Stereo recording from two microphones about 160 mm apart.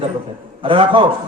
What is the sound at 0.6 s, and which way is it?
Speech, 35° right (ahead or behind).